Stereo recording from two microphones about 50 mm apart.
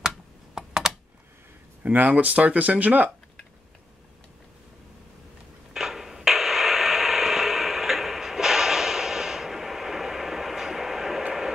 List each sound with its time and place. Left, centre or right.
0.6 s computer keyboard: centre
1.8 s speech: right
5.7 s radio: centre